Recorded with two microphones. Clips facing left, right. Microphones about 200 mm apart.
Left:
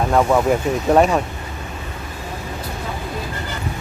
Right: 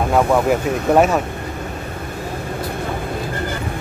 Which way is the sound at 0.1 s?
5° right (ahead or behind).